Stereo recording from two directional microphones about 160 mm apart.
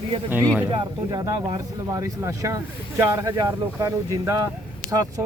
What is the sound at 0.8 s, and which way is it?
Speech, 30° right (ahead or behind).